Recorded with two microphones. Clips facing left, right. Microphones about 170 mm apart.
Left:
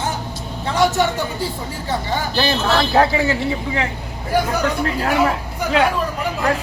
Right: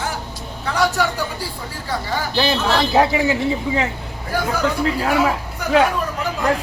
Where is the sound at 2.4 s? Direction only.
15° right (ahead or behind).